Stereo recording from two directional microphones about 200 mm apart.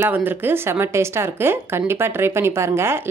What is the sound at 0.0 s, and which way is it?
Speech, 10° right (ahead or behind).